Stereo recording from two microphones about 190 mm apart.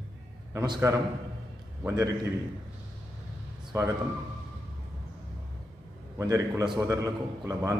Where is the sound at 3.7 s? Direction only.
20° right (ahead or behind).